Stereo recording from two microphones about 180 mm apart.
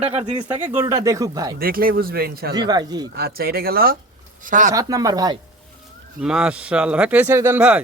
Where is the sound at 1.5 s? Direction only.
55° right (ahead or behind).